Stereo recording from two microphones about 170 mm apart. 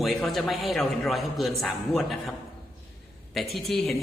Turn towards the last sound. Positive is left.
turn(degrees=0)  # may be behind; listen again after turning